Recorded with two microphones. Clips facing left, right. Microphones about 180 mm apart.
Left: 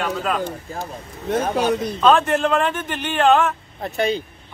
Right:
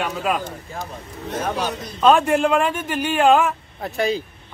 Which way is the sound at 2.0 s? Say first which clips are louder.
Right 2 dB; 10° right (ahead or behind).